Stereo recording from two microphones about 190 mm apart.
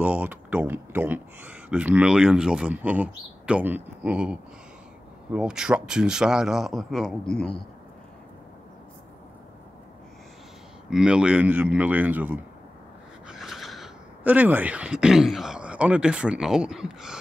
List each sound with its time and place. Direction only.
0.0 s speech: 10° right (ahead or behind)
10.9 s speech: 5° right (ahead or behind)